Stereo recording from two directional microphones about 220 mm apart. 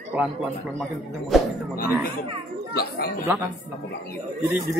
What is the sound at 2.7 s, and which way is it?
Speech, 45° left (ahead or behind).